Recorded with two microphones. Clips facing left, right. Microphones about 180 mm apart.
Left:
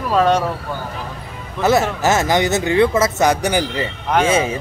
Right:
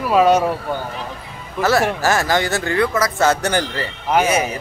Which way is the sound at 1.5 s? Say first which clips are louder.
Left 1 dB; 20° left (ahead or behind).